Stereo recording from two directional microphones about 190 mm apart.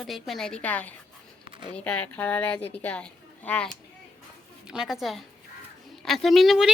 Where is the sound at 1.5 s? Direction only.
25° right (ahead or behind).